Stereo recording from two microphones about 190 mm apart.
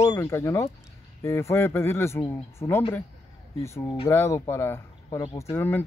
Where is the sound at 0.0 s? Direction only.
15° left (ahead or behind).